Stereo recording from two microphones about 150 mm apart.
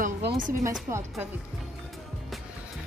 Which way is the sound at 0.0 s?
90° right.